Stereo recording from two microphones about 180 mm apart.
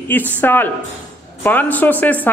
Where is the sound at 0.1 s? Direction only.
10° left (ahead or behind).